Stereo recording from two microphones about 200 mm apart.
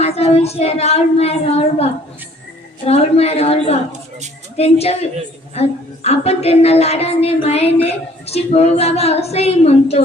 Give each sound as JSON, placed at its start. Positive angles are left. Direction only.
{"t": 0.0, "sound": "a woman's voice", "side_deg": 30}